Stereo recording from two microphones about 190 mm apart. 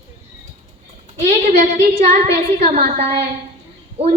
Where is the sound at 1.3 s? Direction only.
35° right (ahead or behind).